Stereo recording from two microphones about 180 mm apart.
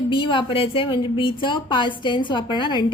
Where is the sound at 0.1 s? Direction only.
25° left (ahead or behind).